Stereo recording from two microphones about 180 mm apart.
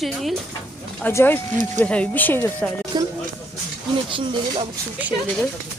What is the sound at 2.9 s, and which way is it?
Speech, 25° right (ahead or behind).